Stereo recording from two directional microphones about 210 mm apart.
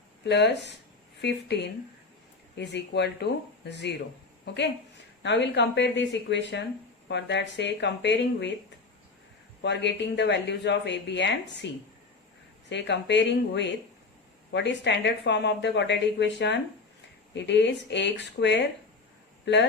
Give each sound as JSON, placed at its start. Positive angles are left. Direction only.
{"t": 0.3, "sound": "speech", "side_deg": 55}
{"t": 9.6, "sound": "speech", "side_deg": 55}